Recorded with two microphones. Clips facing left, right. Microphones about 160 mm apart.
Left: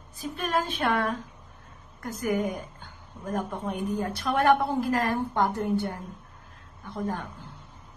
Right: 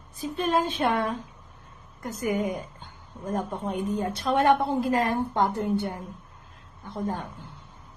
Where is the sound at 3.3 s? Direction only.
20° right (ahead or behind).